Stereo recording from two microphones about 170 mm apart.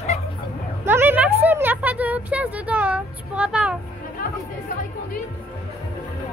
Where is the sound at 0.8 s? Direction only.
10° right (ahead or behind).